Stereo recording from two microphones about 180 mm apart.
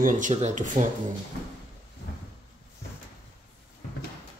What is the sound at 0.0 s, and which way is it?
Speech, 40° right (ahead or behind).